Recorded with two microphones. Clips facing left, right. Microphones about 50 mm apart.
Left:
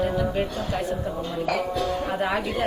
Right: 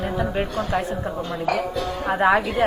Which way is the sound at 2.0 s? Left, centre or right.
Right.